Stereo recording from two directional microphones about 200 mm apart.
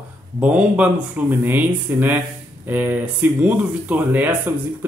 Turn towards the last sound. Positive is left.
turn(degrees=-10)  # may be behind; listen again after turning